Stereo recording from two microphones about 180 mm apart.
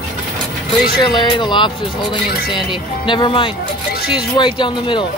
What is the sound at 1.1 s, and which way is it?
Speech, 25° left (ahead or behind).